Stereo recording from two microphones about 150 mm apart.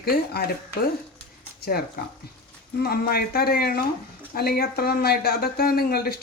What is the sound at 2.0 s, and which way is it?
Speech, 90° left.